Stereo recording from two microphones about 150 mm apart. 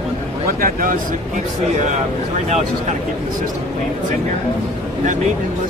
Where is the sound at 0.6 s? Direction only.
65° right (ahead or behind).